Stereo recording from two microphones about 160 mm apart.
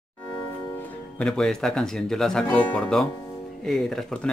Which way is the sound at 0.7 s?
10° left (ahead or behind).